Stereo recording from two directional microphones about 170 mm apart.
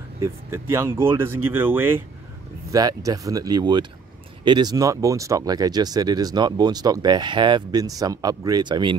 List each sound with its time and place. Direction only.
0.2 s speech: 15° right (ahead or behind)